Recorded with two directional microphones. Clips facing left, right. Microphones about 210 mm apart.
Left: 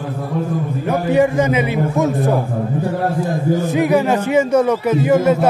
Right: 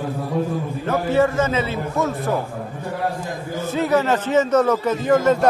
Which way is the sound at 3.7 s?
15° left (ahead or behind).